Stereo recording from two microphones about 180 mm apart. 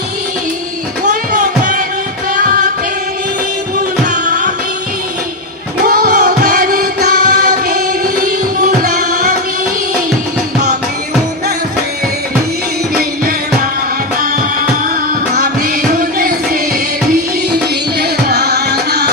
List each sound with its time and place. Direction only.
1.4 s music: 45° right (ahead or behind)
5.8 s music: 60° right (ahead or behind)
16.0 s music: 55° right (ahead or behind)
18.3 s music: 65° right (ahead or behind)